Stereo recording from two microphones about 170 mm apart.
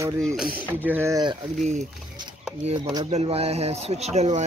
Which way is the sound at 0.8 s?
15° right (ahead or behind).